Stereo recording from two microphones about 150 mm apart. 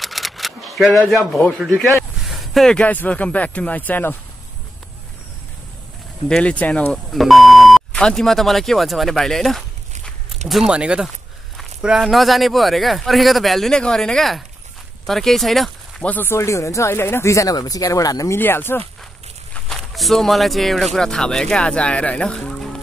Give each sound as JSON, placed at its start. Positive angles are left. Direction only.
{"t": 0.0, "sound": "camera", "side_deg": 0}
{"t": 2.2, "sound": "speech", "side_deg": 0}
{"t": 6.2, "sound": "speech", "side_deg": 5}
{"t": 19.5, "sound": "speech", "side_deg": 0}